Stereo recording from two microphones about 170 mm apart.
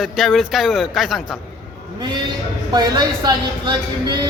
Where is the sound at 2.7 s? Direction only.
25° right (ahead or behind).